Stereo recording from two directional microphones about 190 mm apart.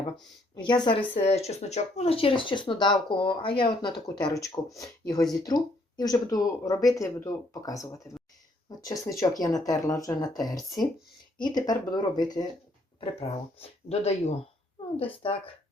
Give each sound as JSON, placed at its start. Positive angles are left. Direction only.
{"t": 0.5, "sound": "speech", "side_deg": 25}